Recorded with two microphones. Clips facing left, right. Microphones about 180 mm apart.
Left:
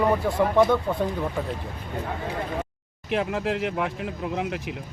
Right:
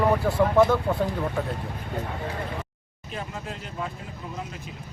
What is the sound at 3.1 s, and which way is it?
Speech, 80° left.